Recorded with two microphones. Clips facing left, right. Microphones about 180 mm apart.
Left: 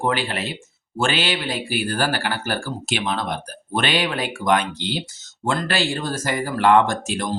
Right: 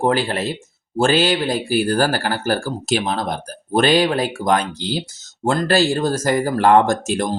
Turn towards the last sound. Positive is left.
turn(degrees=-45)  # may be behind; listen again after turning